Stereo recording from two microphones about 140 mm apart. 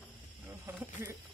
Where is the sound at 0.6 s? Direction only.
20° right (ahead or behind).